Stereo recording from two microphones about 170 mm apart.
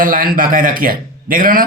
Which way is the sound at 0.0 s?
55° right (ahead or behind).